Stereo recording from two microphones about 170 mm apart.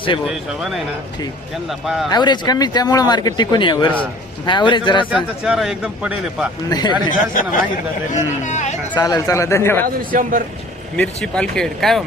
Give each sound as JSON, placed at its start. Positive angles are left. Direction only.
{"t": 0.3, "sound": "speech", "side_deg": 0}
{"t": 1.8, "sound": "speech", "side_deg": 0}
{"t": 2.0, "sound": "a man's voice", "side_deg": 25}
{"t": 5.1, "sound": "speech", "side_deg": -5}
{"t": 6.7, "sound": "a man's voice", "side_deg": 25}
{"t": 7.1, "sound": "speech", "side_deg": 50}
{"t": 9.0, "sound": "speech", "side_deg": 20}
{"t": 9.8, "sound": "a man's voice", "side_deg": -55}
{"t": 10.9, "sound": "speech", "side_deg": 5}